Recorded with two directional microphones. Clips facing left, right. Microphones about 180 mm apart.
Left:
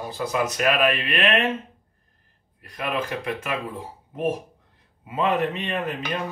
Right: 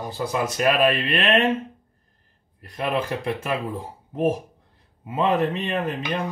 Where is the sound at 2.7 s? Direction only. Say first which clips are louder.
Right 3 dB; 35° right (ahead or behind).